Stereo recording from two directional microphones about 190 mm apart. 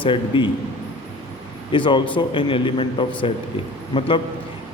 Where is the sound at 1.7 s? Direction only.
25° left (ahead or behind).